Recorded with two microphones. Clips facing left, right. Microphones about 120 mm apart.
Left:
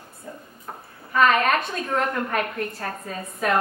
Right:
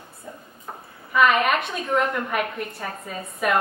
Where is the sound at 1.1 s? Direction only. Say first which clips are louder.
Even; 10° right (ahead or behind).